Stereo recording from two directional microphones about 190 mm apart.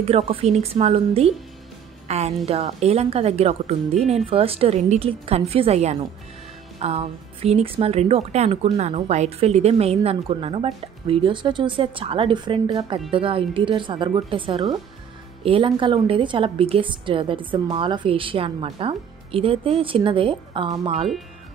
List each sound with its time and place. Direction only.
0.0 s a woman's voice: 30° right (ahead or behind)